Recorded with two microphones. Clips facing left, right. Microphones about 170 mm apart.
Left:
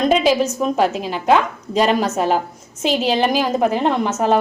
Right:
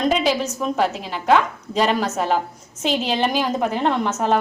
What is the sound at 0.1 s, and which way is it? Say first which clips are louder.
A woman's voice: left 5 dB; 20° left (ahead or behind).